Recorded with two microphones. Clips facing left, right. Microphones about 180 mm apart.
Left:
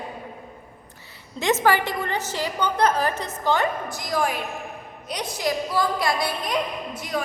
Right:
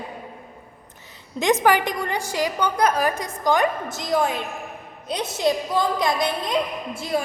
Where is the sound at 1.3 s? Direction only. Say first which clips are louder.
Right 2 dB; 15° right (ahead or behind).